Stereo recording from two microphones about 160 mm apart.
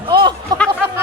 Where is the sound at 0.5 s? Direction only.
25° right (ahead or behind).